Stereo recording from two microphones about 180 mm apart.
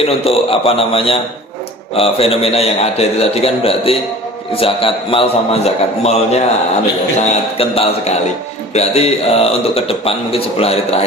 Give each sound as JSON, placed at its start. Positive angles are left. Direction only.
{"t": 0.0, "sound": "a man's voice", "side_deg": 30}
{"t": 7.6, "sound": "a man's voice", "side_deg": 35}